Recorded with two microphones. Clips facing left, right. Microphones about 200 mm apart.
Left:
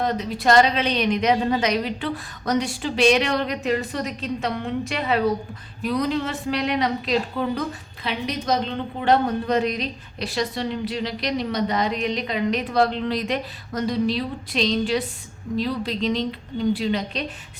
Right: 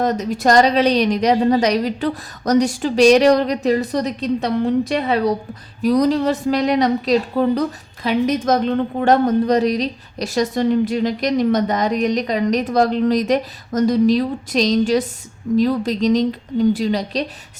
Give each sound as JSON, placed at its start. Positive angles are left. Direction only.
{"t": 0.0, "sound": "a woman's voice", "side_deg": -45}
{"t": 8.0, "sound": "a woman's voice", "side_deg": -50}